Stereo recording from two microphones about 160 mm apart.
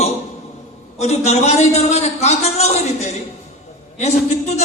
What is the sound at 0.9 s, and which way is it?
A man's voice, 45° left (ahead or behind).